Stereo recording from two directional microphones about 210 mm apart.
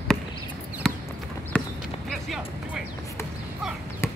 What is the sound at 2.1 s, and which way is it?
Music, centre (ahead or behind).